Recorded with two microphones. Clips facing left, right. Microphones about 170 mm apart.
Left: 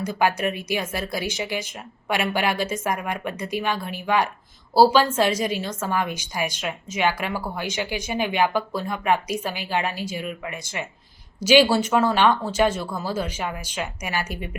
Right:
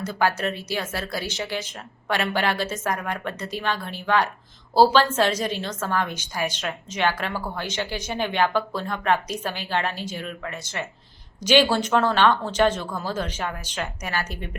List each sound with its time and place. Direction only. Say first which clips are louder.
0.0 s a woman's voice: left 1 dB; 15° left (ahead or behind)